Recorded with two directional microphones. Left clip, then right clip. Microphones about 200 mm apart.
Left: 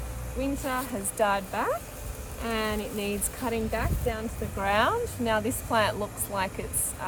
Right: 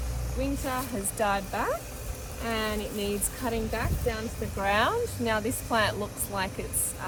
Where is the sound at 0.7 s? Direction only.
25° left (ahead or behind).